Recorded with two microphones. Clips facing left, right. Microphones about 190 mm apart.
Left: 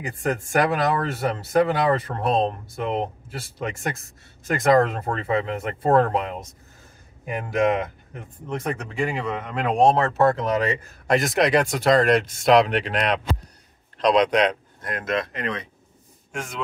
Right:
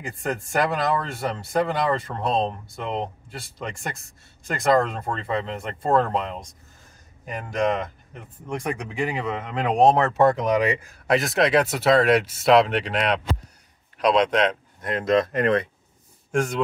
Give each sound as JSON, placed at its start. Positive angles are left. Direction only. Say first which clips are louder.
{"t": 0.0, "sound": "speech", "louder": "left 3 dB", "side_deg": 0}
{"t": 8.5, "sound": "speech", "louder": "even", "side_deg": -10}
{"t": 14.8, "sound": "speech", "louder": "right 4 dB", "side_deg": -25}
{"t": 15.3, "sound": "speech", "louder": "right 8 dB", "side_deg": -55}
{"t": 16.3, "sound": "rub", "louder": "right 10 dB", "side_deg": -45}